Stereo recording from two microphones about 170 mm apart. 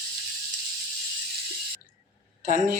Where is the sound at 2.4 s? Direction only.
45° right (ahead or behind).